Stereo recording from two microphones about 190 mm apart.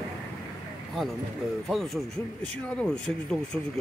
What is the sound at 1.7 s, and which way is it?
Speech, centre (ahead or behind).